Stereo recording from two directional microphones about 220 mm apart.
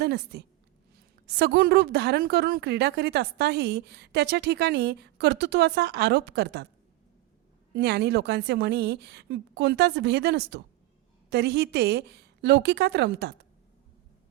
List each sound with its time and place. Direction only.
0.0 s a woman's voice: 50° right (ahead or behind)
7.8 s a woman's voice: 50° right (ahead or behind)